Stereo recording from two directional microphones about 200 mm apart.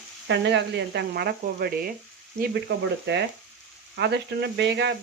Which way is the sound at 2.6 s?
60° right (ahead or behind).